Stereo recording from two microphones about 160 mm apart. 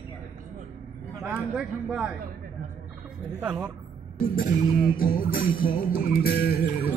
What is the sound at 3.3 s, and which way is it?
Speech, 10° right (ahead or behind).